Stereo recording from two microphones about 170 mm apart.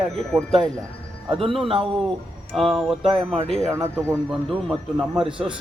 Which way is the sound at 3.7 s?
15° right (ahead or behind).